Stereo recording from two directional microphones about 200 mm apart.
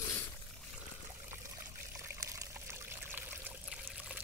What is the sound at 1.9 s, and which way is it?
Pour, 15° right (ahead or behind).